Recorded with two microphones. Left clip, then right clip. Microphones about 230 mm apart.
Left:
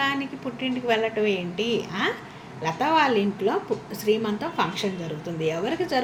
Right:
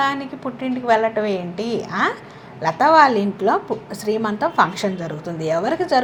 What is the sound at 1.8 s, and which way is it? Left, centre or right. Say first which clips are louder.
A woman's voice: right 6 dB; right.